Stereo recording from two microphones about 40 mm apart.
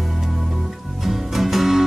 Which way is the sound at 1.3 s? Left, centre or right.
Centre.